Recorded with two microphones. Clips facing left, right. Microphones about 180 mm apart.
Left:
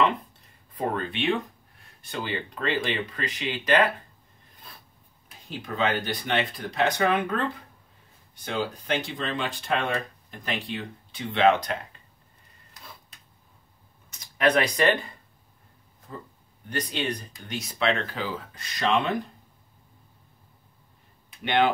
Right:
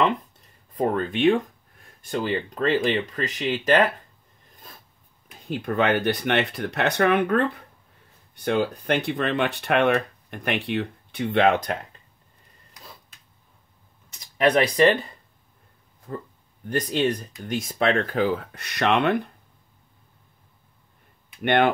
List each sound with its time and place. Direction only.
0.7 s speech: 45° right (ahead or behind)
5.5 s speech: 60° right (ahead or behind)
14.4 s speech: 20° right (ahead or behind)
16.1 s speech: 55° right (ahead or behind)
21.4 s speech: 55° right (ahead or behind)